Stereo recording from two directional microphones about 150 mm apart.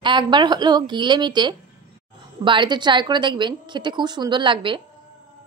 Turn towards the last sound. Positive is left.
turn(degrees=-35)  # may be behind; listen again after turning